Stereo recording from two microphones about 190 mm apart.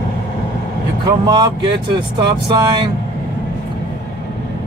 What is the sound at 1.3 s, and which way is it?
Speech, 25° right (ahead or behind).